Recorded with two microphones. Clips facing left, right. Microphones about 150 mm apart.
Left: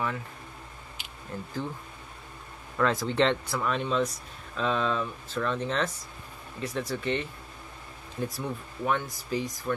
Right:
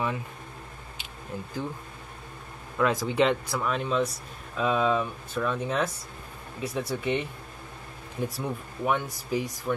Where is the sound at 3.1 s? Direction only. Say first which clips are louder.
Right 1 dB; 5° right (ahead or behind).